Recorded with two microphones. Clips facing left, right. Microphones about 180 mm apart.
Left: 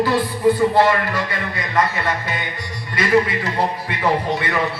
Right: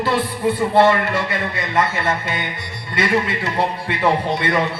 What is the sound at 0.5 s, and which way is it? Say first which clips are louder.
A man's voice: right 1 dB; 25° right (ahead or behind).